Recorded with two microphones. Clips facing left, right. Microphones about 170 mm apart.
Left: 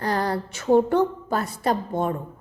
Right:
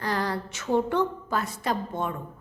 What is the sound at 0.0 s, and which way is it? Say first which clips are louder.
A woman's voice: left 4 dB; 35° left (ahead or behind).